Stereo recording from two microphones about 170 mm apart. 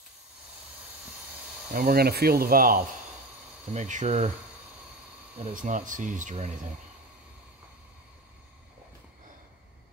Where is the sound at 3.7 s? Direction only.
45° right (ahead or behind).